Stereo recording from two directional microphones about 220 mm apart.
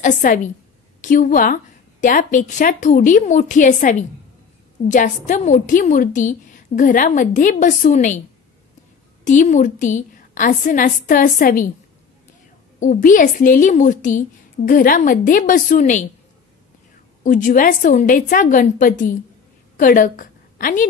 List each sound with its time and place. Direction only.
0.0 s a woman's voice: 35° left (ahead or behind)
9.2 s a woman's voice: 35° left (ahead or behind)
12.8 s a woman's voice: 35° left (ahead or behind)
17.2 s a woman's voice: 35° left (ahead or behind)